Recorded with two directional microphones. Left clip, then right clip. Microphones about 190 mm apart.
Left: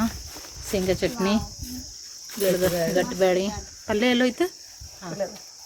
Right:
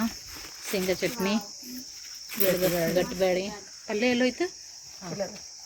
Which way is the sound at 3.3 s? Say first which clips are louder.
Left 4 dB; 15° left (ahead or behind).